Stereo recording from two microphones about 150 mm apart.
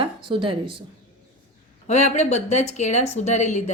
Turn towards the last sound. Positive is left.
turn(degrees=50)  # may be behind; listen again after turning